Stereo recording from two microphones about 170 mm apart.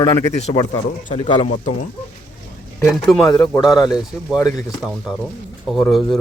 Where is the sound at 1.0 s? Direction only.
45° left (ahead or behind).